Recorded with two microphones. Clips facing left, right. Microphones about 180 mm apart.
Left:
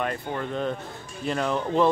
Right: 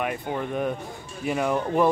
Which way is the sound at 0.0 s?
10° right (ahead or behind).